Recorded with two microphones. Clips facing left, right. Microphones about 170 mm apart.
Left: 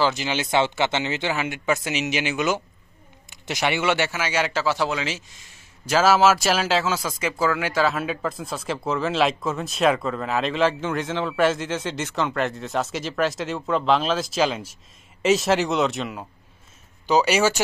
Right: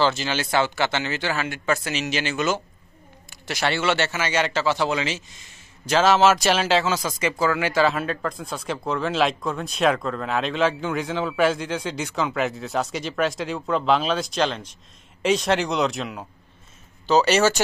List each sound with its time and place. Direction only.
0.0 s speech: 15° left (ahead or behind)